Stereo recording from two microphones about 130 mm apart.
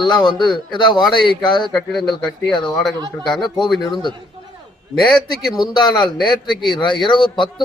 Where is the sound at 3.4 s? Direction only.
35° left (ahead or behind).